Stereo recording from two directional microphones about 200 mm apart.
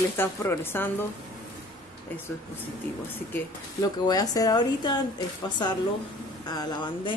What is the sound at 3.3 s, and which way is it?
Speech, 15° left (ahead or behind).